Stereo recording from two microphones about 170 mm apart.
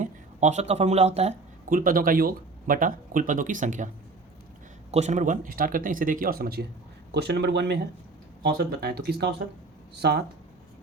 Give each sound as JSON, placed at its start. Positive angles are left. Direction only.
{"t": 0.0, "sound": "speech", "side_deg": -45}
{"t": 1.7, "sound": "speech", "side_deg": -55}
{"t": 4.9, "sound": "speech", "side_deg": -40}
{"t": 7.1, "sound": "speech", "side_deg": -75}
{"t": 8.4, "sound": "speech", "side_deg": -65}